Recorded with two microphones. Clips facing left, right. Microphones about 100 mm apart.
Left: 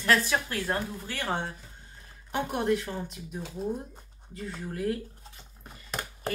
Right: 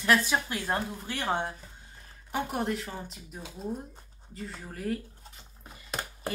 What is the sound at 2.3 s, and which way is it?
Speech, centre (ahead or behind).